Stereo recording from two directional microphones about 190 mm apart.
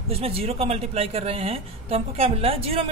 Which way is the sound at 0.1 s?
30° right (ahead or behind).